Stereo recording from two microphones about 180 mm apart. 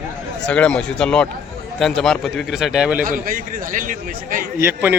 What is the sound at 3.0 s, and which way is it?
A man's voice, 50° right (ahead or behind).